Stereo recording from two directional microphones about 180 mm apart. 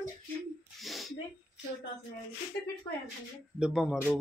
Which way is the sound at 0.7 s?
Centre (ahead or behind).